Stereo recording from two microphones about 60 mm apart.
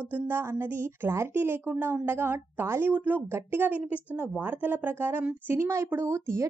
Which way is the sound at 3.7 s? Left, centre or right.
Right.